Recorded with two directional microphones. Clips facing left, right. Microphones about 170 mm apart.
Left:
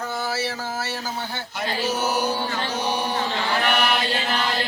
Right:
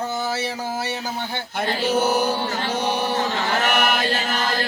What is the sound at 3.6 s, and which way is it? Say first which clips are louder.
Chant: right 1 dB; 45° right (ahead or behind).